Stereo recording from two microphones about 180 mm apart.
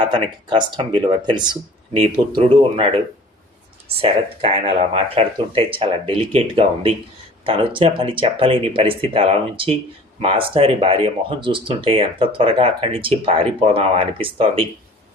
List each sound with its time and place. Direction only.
0.0 s speech: 25° right (ahead or behind)
4.0 s speech: 35° right (ahead or behind)